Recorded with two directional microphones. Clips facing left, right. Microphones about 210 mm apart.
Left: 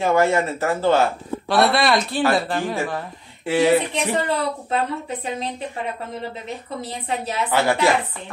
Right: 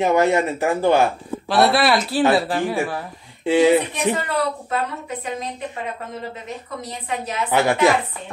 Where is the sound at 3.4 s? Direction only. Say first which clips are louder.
Right 2 dB; 20° right (ahead or behind).